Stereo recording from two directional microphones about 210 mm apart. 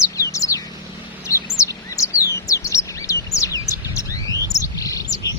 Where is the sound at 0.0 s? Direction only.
15° left (ahead or behind).